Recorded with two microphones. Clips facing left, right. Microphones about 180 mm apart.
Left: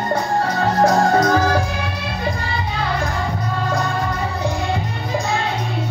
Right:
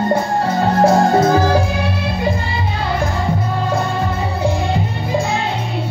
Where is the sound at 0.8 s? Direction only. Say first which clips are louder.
Right 3 dB; 25° right (ahead or behind).